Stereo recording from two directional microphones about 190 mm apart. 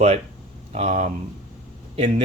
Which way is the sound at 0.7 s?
35° right (ahead or behind).